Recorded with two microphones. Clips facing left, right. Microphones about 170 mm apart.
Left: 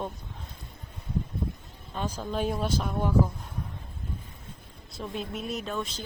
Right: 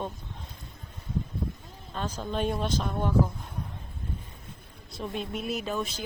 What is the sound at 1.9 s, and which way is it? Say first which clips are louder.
Speech: left 1 dB; 10° left (ahead or behind).